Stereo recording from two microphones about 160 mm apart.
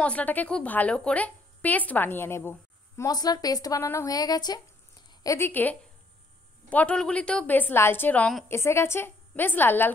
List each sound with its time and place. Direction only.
0.0 s a woman's voice: 10° left (ahead or behind)
3.0 s a woman's voice: 25° left (ahead or behind); by 8.5 s 5° left (ahead or behind)
8.5 s a woman's voice: 15° left (ahead or behind)